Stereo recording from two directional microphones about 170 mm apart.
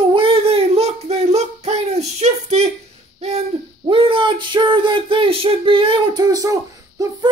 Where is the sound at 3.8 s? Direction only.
30° right (ahead or behind).